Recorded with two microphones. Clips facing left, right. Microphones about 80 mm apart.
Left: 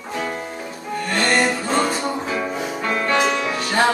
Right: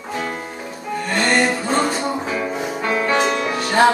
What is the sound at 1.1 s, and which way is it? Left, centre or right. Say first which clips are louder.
Music: right 1 dB; centre.